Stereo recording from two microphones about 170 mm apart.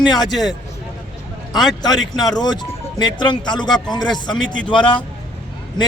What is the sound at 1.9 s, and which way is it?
Speech, centre (ahead or behind).